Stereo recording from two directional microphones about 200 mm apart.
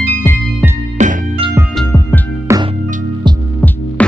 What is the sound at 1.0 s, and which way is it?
Music, 35° right (ahead or behind).